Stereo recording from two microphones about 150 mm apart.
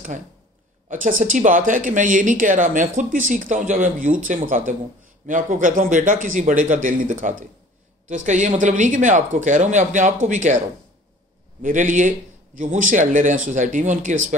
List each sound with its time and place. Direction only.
0.8 s speech: 60° right (ahead or behind)
11.6 s speech: 60° right (ahead or behind)